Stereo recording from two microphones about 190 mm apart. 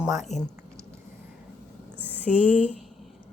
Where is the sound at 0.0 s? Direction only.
Centre (ahead or behind).